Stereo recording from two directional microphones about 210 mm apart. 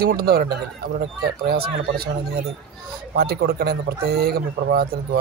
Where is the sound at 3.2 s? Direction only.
50° right (ahead or behind).